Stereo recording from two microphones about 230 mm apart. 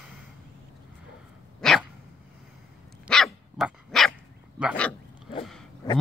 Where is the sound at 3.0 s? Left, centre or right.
Centre.